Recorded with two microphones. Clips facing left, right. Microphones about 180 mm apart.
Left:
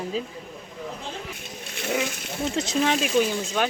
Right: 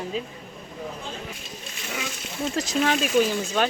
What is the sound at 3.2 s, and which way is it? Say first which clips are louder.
Speech: right 2 dB; 10° right (ahead or behind).